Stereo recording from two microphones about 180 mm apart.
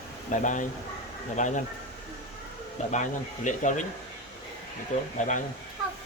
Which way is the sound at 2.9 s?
45° left (ahead or behind).